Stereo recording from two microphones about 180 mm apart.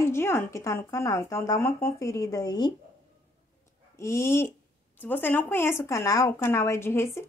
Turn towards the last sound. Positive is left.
turn(degrees=15)  # may be behind; listen again after turning